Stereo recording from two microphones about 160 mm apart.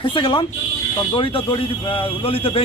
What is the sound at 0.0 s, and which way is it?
Speech, 30° left (ahead or behind).